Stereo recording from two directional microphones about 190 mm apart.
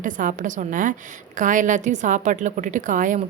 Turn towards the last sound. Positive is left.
turn(degrees=-40)  # may be behind; listen again after turning